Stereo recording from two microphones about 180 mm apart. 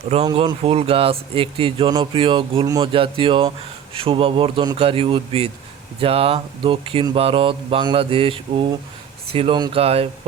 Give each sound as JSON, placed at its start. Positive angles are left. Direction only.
{"t": 0.3, "sound": "speech", "side_deg": -30}